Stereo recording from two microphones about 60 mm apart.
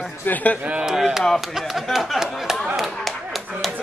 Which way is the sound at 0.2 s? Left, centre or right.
Left.